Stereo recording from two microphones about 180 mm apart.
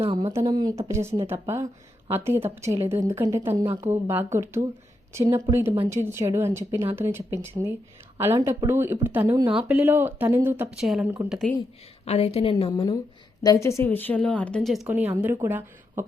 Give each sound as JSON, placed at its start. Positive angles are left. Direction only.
{"t": 0.0, "sound": "a woman's voice", "side_deg": -25}
{"t": 12.0, "sound": "a woman's voice", "side_deg": 35}
{"t": 13.4, "sound": "a woman's voice", "side_deg": 20}